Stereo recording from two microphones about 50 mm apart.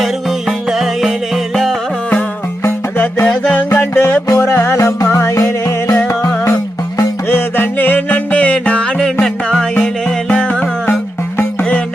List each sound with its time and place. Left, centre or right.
0.7 s music: centre
3.8 s music: left
7.3 s music: left
9.2 s music: centre
10.2 s music: left